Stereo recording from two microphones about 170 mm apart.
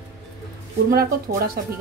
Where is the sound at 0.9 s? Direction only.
60° right (ahead or behind).